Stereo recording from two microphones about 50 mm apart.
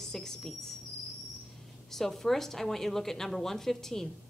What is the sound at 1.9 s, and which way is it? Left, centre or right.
A woman's voice, centre.